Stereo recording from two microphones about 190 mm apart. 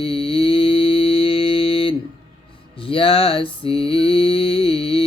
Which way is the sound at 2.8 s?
30° left (ahead or behind).